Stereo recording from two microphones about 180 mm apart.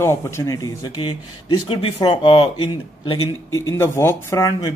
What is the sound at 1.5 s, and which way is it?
Speech, 30° left (ahead or behind).